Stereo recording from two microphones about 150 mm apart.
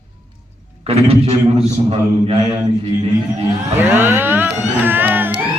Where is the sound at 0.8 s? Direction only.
40° right (ahead or behind).